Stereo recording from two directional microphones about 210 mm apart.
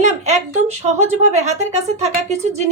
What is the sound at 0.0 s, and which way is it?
A woman's voice, 35° right (ahead or behind).